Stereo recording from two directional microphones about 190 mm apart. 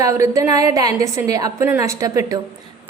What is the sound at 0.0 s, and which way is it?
A woman's voice, 15° right (ahead or behind).